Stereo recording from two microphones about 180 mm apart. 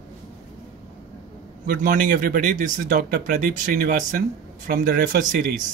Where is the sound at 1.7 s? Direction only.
50° right (ahead or behind).